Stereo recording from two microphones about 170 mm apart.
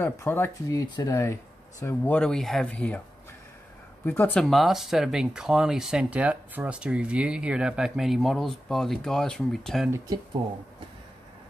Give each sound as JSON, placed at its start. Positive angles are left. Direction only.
{"t": 0.0, "sound": "speech", "side_deg": 10}
{"t": 4.0, "sound": "speech", "side_deg": 10}
{"t": 9.8, "sound": "speech", "side_deg": -15}